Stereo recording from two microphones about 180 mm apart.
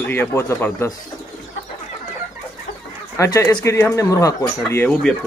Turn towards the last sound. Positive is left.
turn(degrees=15)  # may be behind; listen again after turning